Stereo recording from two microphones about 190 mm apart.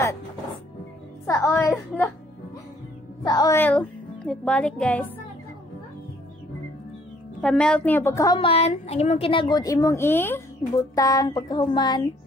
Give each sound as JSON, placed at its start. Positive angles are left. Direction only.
{"t": 1.2, "sound": "a woman's voice", "side_deg": 15}
{"t": 3.3, "sound": "a woman's voice", "side_deg": 20}
{"t": 7.4, "sound": "a woman's voice", "side_deg": 5}